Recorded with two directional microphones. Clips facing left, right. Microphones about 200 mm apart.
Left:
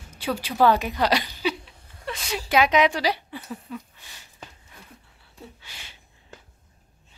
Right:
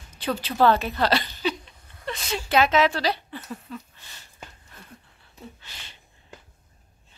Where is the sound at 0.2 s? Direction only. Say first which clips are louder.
Even; 10° left (ahead or behind).